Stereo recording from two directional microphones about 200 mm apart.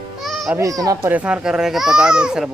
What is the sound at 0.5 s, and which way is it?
Speech, 15° right (ahead or behind).